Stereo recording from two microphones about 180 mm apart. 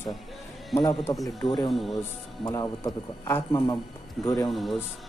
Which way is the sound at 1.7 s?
Centre (ahead or behind).